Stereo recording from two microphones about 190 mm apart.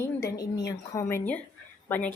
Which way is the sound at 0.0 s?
15° left (ahead or behind).